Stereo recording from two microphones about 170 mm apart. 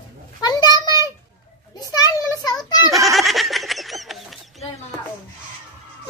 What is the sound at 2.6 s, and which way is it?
Goat, 25° left (ahead or behind).